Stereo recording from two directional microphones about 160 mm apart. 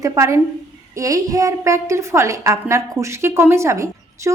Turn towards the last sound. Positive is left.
turn(degrees=-20)  # may be behind; listen again after turning